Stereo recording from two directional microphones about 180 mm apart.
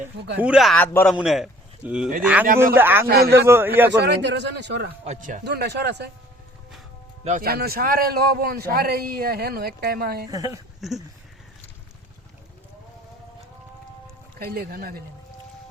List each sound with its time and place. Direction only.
0.3 s a man's voice: 5° right (ahead or behind)
3.1 s a man's voice: 60° right (ahead or behind)
3.3 s a man's voice: 10° right (ahead or behind)
4.0 s speech: 70° right (ahead or behind)
5.0 s speech: 45° right (ahead or behind)
5.5 s speech: 65° right (ahead or behind)
7.3 s a man's voice: 55° right (ahead or behind)
10.2 s speech: 20° right (ahead or behind)
10.8 s a sound: centre (ahead or behind)
14.3 s a man's voice: 60° right (ahead or behind)